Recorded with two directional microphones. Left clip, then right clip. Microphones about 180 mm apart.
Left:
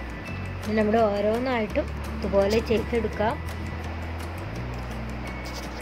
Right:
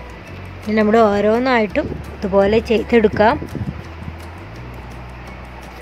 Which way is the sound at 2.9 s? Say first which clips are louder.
Right 13 dB; 40° right (ahead or behind).